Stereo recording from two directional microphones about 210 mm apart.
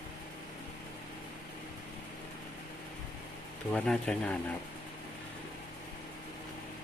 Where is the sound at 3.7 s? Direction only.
5° left (ahead or behind).